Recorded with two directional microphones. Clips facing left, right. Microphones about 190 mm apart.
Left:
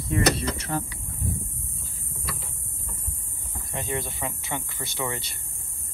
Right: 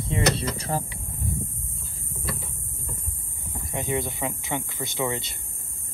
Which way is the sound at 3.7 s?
15° right (ahead or behind).